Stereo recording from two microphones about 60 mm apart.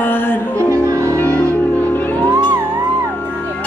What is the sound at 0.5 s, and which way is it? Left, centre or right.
Music, right.